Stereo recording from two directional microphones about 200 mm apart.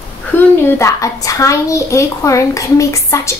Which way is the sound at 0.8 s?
15° left (ahead or behind).